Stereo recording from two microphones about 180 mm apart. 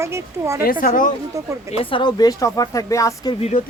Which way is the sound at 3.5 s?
45° left (ahead or behind).